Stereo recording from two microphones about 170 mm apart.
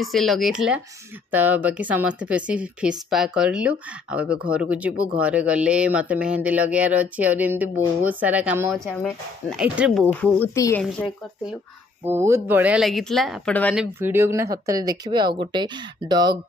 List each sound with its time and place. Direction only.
0.0 s speech: centre (ahead or behind)
8.7 s speech: 5° left (ahead or behind)
10.2 s speech: 15° left (ahead or behind)
12.0 s speech: 15° right (ahead or behind); by 13.7 s 10° left (ahead or behind)
13.9 s speech: 15° right (ahead or behind)